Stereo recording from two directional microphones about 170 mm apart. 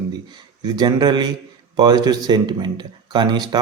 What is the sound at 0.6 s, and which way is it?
Speech, 25° right (ahead or behind).